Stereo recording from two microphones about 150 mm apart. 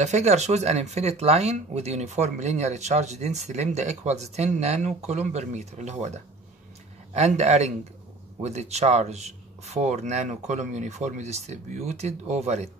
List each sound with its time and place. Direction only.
0.0 s speech: 45° right (ahead or behind)